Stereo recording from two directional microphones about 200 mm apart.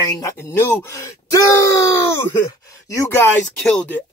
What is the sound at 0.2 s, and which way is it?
Speech, 15° left (ahead or behind).